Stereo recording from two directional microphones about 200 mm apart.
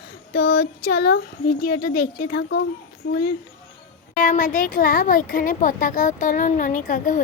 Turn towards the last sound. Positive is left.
turn(degrees=40)  # may be behind; listen again after turning